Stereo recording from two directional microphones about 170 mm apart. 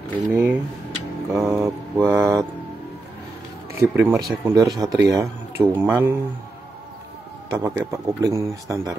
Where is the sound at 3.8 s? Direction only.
15° right (ahead or behind).